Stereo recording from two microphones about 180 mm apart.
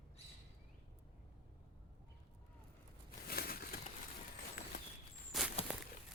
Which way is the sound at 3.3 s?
55° left (ahead or behind).